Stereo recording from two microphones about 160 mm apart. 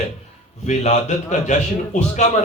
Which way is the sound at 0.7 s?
45° left (ahead or behind).